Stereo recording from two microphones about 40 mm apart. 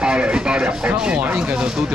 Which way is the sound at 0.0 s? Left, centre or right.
Right.